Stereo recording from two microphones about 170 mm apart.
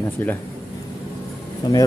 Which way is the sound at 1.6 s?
25° left (ahead or behind).